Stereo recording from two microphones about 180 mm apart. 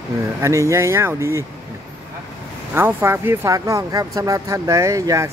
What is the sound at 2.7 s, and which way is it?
Speech, 10° right (ahead or behind).